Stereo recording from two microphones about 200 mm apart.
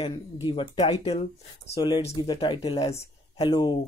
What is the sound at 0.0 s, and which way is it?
Speech, 25° left (ahead or behind).